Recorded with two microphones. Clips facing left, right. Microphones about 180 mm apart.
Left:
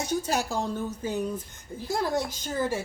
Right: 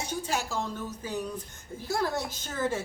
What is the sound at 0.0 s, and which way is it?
A woman's voice, 40° left (ahead or behind).